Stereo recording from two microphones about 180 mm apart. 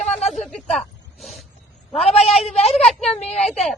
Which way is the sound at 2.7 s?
Centre (ahead or behind).